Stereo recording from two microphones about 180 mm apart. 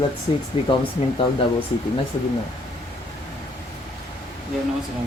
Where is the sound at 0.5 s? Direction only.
30° left (ahead or behind).